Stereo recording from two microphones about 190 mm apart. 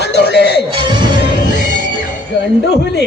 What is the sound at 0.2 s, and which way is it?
Music, 65° left (ahead or behind).